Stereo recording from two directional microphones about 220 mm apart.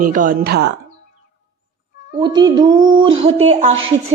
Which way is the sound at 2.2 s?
20° right (ahead or behind).